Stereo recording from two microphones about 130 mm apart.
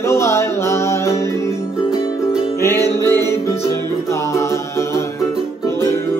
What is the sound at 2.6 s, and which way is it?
Music, 20° left (ahead or behind).